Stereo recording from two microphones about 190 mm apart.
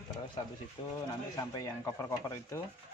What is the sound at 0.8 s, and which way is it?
Speech, 25° left (ahead or behind).